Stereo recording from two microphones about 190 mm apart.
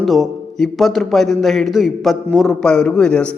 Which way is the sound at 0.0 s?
Centre (ahead or behind).